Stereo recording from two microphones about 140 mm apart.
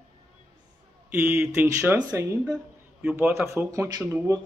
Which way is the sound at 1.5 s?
15° right (ahead or behind).